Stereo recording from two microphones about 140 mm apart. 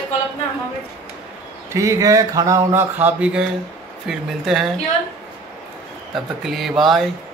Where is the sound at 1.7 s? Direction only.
25° right (ahead or behind); by 4.7 s centre (ahead or behind).